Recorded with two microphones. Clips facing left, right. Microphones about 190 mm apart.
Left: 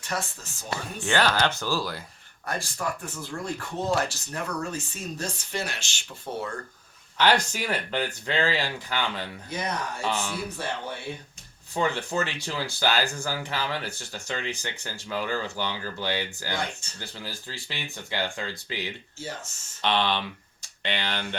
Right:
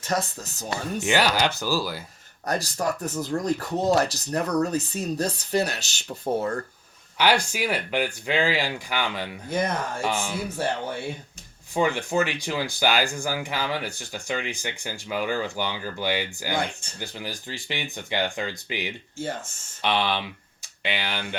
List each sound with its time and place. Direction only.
0.0 s speech: 40° right (ahead or behind)
1.0 s speech: 10° right (ahead or behind)
2.5 s speech: 40° right (ahead or behind)
7.2 s speech: 10° right (ahead or behind)
9.5 s speech: 50° right (ahead or behind)
11.7 s speech: 15° right (ahead or behind)
19.2 s speech: 55° right (ahead or behind)
19.8 s speech: 10° right (ahead or behind)